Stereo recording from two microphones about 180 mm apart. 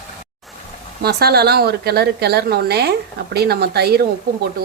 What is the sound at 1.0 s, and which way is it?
A woman's voice, 60° right (ahead or behind).